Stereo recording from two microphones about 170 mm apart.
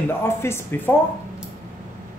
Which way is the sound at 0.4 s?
15° left (ahead or behind).